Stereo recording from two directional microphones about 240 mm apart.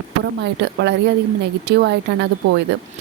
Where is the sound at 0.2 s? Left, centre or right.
Right.